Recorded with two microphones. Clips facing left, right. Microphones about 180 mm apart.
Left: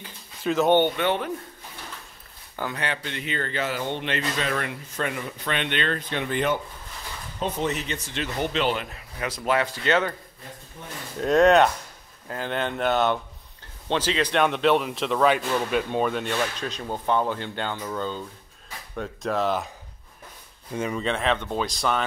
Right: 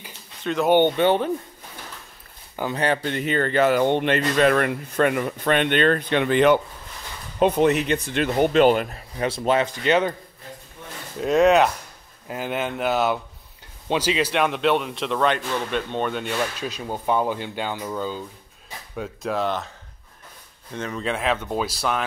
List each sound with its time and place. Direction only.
0.4 s speech: 5° left (ahead or behind)
0.7 s a man's voice: 15° right (ahead or behind)
0.9 s a man's voice: 30° right (ahead or behind)
2.7 s speech: 40° right (ahead or behind); by 6.6 s 80° right
7.3 s speech: 60° right (ahead or behind); by 9.0 s 45° right (ahead or behind)
9.2 s speech: 30° right (ahead or behind)
11.1 s a man's voice: centre (ahead or behind)
20.7 s speech: 10° left (ahead or behind)
21.0 s speech: 5° right (ahead or behind)